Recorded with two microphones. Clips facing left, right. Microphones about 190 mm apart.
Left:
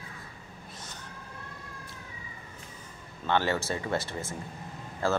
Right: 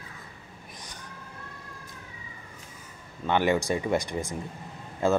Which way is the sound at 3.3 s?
15° right (ahead or behind).